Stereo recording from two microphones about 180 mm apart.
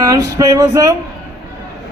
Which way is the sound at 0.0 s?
20° right (ahead or behind).